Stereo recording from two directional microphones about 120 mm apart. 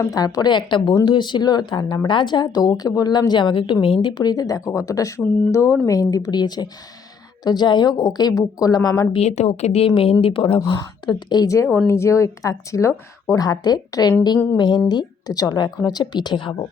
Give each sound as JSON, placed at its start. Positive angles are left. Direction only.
{"t": 0.0, "sound": "a woman's voice", "side_deg": 30}
{"t": 4.1, "sound": "a woman's voice", "side_deg": 35}
{"t": 9.1, "sound": "speech", "side_deg": 65}
{"t": 10.8, "sound": "a woman's voice", "side_deg": 35}